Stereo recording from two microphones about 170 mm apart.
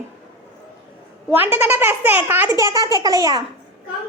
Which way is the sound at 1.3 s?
10° right (ahead or behind).